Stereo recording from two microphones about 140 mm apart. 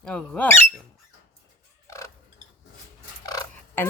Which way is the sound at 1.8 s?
20° left (ahead or behind).